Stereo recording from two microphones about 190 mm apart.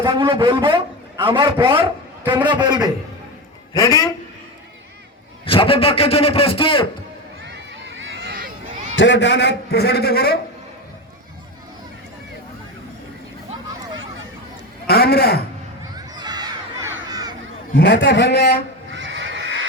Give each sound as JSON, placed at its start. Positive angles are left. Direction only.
{"t": 0.0, "sound": "a man's voice", "side_deg": -25}
{"t": 3.8, "sound": "a man's voice", "side_deg": 15}
{"t": 5.5, "sound": "a man's voice", "side_deg": 30}
{"t": 7.4, "sound": "a sound", "side_deg": -70}
{"t": 9.0, "sound": "a man's voice", "side_deg": 65}
{"t": 14.8, "sound": "a man's voice", "side_deg": 55}
{"t": 16.0, "sound": "crowd", "side_deg": -20}
{"t": 17.7, "sound": "a man's voice", "side_deg": 65}
{"t": 18.9, "sound": "neigh", "side_deg": -80}